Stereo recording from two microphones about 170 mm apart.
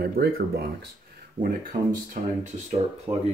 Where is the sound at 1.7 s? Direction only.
45° right (ahead or behind).